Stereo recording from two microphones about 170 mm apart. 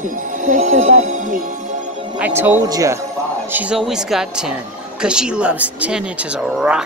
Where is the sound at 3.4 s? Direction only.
10° right (ahead or behind).